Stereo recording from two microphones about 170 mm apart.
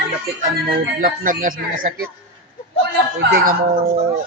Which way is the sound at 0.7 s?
55° right (ahead or behind).